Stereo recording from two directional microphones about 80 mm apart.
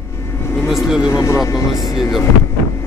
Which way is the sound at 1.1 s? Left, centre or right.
Left.